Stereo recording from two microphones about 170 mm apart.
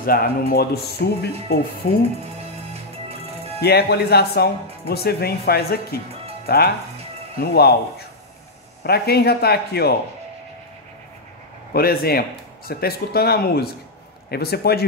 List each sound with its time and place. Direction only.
0.0 s speech: 60° left (ahead or behind)
3.6 s speech: 70° left (ahead or behind)
8.8 s speech: 65° left (ahead or behind)
11.7 s speech: 65° left (ahead or behind)